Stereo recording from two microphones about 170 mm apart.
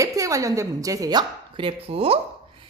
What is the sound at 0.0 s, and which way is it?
A woman's voice, 20° right (ahead or behind).